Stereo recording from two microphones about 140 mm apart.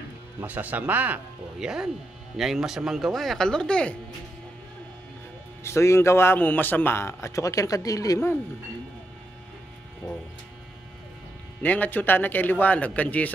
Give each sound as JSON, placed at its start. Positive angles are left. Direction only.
{"t": 0.4, "sound": "speech", "side_deg": -10}
{"t": 5.6, "sound": "a man's voice", "side_deg": 20}
{"t": 11.6, "sound": "a man's voice", "side_deg": 10}